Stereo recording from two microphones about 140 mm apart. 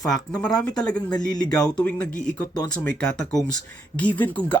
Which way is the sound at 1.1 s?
30° left (ahead or behind).